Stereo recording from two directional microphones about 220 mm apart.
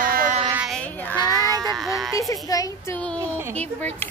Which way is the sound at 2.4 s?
15° left (ahead or behind).